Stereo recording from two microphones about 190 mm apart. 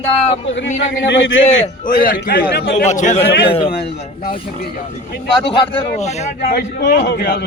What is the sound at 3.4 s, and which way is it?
Speech, 25° left (ahead or behind).